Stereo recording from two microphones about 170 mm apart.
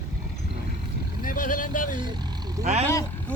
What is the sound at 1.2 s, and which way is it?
Speech, 55° left (ahead or behind).